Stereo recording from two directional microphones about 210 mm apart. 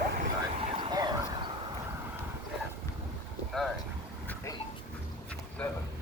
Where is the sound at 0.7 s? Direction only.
20° right (ahead or behind).